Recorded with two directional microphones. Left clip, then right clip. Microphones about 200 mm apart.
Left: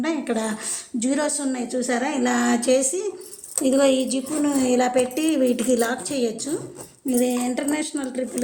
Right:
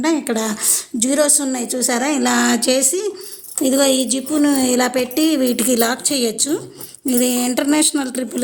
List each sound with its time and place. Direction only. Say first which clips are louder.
0.0 s a woman's voice: right 6 dB; 65° right (ahead or behind)